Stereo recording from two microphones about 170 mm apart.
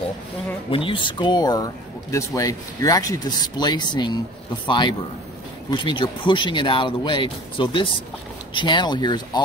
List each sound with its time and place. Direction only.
0.7 s a man's voice: 30° left (ahead or behind)